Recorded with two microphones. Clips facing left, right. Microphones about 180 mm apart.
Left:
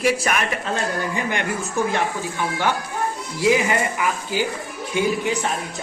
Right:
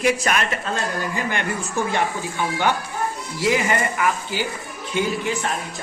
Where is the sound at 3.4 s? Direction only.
10° left (ahead or behind).